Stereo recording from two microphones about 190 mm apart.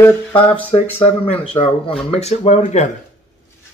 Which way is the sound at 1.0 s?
30° left (ahead or behind).